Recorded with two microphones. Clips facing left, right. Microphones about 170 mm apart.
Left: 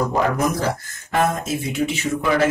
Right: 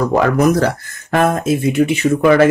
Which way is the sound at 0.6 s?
65° right (ahead or behind).